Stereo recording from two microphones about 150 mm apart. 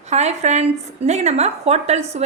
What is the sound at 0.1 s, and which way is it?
A woman's voice, 50° right (ahead or behind).